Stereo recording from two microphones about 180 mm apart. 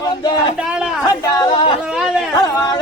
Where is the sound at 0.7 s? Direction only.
5° right (ahead or behind).